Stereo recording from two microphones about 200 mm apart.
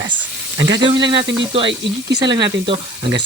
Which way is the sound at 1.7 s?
60° right (ahead or behind).